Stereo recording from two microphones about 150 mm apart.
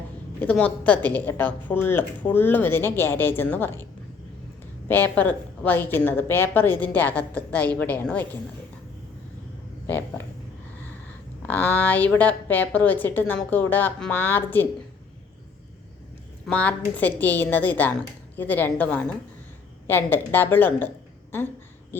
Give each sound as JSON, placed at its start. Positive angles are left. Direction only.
{"t": 0.4, "sound": "a woman's voice", "side_deg": 10}
{"t": 4.9, "sound": "a woman's voice", "side_deg": 10}
{"t": 9.8, "sound": "speech", "side_deg": 15}
{"t": 11.4, "sound": "a woman's voice", "side_deg": 10}
{"t": 16.5, "sound": "a woman's voice", "side_deg": 10}